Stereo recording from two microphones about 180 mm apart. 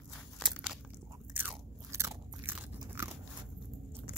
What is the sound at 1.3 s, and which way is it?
Crunch, 15° right (ahead or behind).